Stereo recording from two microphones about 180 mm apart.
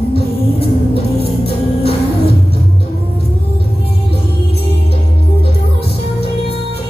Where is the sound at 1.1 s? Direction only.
30° left (ahead or behind).